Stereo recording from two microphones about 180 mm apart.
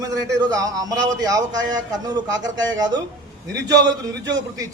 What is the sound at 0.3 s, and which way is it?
A man's voice, 20° right (ahead or behind).